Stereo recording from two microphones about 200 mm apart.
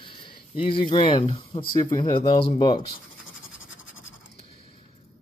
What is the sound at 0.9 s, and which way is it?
Speech, 25° left (ahead or behind).